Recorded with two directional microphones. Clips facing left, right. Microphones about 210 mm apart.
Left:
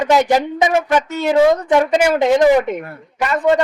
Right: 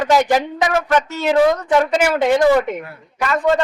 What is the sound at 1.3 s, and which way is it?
Speech, 25° left (ahead or behind).